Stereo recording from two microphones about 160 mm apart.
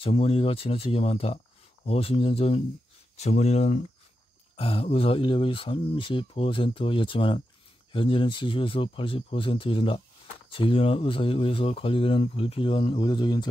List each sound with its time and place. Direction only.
0.0 s speech: 40° left (ahead or behind)